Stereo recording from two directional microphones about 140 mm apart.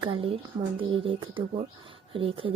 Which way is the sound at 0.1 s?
40° right (ahead or behind).